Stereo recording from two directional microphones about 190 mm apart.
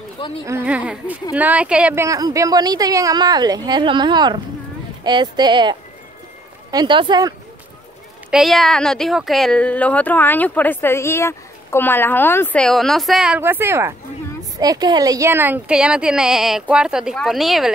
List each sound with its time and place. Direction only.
0.5 s a woman's voice: 10° right (ahead or behind)
8.3 s speech: centre (ahead or behind)